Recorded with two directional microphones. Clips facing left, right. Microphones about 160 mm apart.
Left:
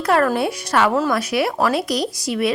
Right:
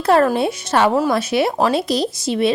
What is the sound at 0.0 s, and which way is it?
Speech, 25° right (ahead or behind).